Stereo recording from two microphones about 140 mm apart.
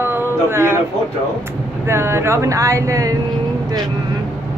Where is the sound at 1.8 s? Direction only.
20° right (ahead or behind).